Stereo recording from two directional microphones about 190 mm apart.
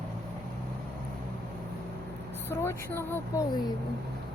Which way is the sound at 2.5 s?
15° left (ahead or behind).